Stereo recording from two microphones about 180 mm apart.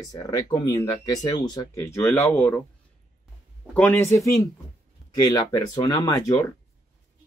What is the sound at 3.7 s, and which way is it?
Speech, 10° left (ahead or behind).